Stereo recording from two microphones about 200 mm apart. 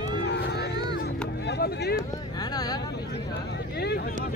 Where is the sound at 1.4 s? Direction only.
55° left (ahead or behind).